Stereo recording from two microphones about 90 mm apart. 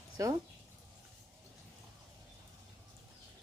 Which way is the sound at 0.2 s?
35° right (ahead or behind).